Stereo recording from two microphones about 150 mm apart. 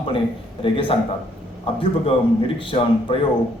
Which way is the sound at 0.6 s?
35° left (ahead or behind).